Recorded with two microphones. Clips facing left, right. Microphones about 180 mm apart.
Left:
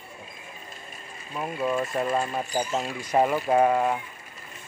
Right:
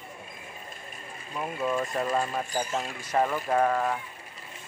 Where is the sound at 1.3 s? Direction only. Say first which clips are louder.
Left 2 dB; 5° left (ahead or behind).